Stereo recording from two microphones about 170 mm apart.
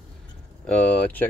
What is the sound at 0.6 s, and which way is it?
Speech, 5° left (ahead or behind).